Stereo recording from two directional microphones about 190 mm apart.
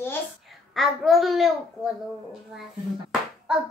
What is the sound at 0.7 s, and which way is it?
A child's voice, centre (ahead or behind).